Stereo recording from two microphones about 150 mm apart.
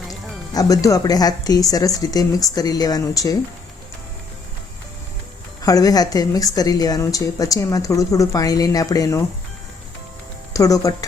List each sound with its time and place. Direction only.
0.1 s a woman's voice: 25° left (ahead or behind)
5.6 s a woman's voice: 25° left (ahead or behind)
10.5 s speech: 20° left (ahead or behind)